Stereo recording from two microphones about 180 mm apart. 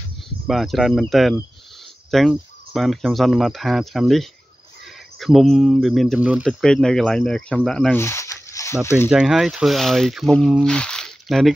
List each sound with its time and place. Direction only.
0.5 s speech: centre (ahead or behind)
6.4 s speech: 5° left (ahead or behind)
8.0 s a sound: 15° left (ahead or behind)
8.8 s speech: 15° left (ahead or behind)
9.1 s speech: 5° right (ahead or behind)